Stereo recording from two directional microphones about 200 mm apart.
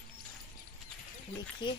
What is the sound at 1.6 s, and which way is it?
Speech, 25° left (ahead or behind).